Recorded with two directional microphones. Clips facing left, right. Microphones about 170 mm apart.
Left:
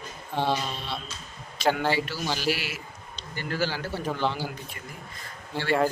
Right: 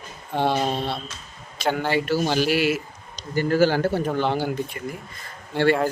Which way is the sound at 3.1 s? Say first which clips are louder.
Right 12 dB; 40° right (ahead or behind).